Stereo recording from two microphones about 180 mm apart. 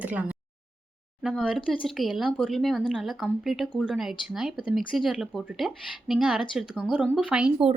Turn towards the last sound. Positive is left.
turn(degrees=-5)  # may be behind; listen again after turning